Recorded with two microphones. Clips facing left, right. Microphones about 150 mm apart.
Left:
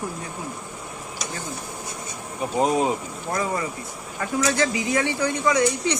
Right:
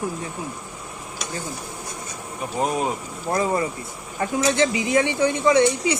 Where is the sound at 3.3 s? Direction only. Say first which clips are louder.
Right 4 dB; 30° right (ahead or behind).